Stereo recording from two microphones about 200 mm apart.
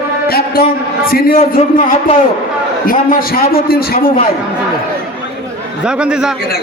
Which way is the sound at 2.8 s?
45° left (ahead or behind).